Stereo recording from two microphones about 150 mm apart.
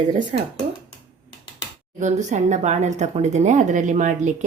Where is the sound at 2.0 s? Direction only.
50° right (ahead or behind).